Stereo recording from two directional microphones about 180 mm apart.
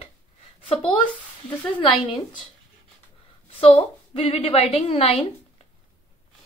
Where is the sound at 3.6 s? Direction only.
35° left (ahead or behind).